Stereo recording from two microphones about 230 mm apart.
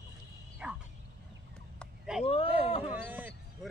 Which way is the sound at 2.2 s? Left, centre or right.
Left.